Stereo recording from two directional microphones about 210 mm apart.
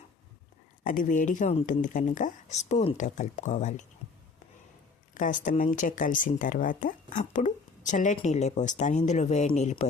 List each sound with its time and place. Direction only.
0.9 s speech: 40° left (ahead or behind)
5.1 s speech: 40° left (ahead or behind)